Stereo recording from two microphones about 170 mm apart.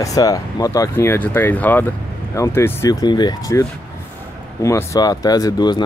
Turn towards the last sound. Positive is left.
turn(degrees=25)  # may be behind; listen again after turning